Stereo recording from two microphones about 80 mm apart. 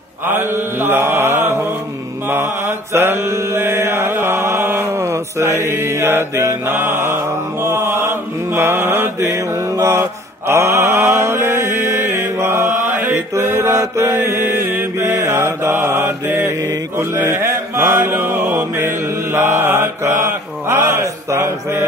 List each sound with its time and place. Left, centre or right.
0.3 s mantra: right
9.2 s mantra: right